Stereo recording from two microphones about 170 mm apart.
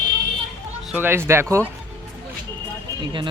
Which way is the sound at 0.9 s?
10° right (ahead or behind).